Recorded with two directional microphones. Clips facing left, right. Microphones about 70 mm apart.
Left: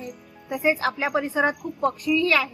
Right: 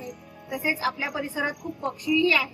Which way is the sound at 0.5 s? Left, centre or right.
Left.